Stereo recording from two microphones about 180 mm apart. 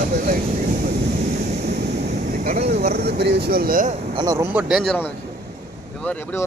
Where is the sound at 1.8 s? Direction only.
65° right (ahead or behind).